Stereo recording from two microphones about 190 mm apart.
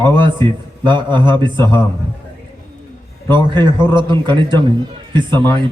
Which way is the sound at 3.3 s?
25° right (ahead or behind).